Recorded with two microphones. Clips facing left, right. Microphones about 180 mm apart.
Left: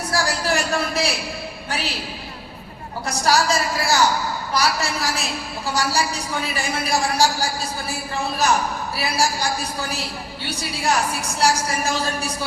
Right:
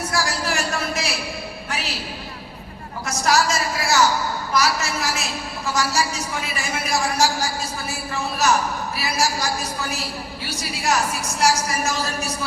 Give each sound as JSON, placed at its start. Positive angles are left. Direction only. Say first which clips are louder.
{"t": 0.1, "sound": "a sound", "louder": "left 5 dB", "side_deg": 35}
{"t": 3.1, "sound": "a man's voice", "louder": "left 1 dB", "side_deg": 35}
{"t": 10.5, "sound": "a man's voice", "louder": "left 1 dB", "side_deg": 35}